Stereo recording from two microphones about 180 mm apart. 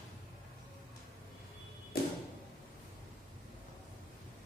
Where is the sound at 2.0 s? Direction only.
55° left (ahead or behind).